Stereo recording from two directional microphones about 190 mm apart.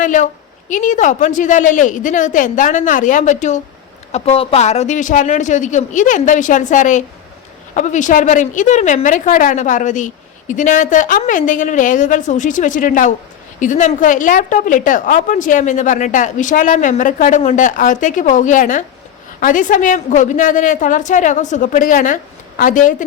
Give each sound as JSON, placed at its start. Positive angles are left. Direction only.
{"t": 0.0, "sound": "a woman's voice", "side_deg": 40}